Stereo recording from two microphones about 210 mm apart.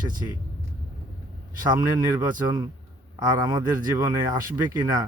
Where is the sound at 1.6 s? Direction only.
20° right (ahead or behind).